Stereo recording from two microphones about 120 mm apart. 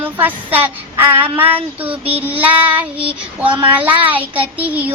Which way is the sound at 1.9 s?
55° right (ahead or behind).